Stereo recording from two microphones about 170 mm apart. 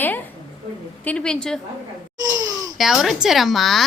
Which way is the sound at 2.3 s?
20° right (ahead or behind).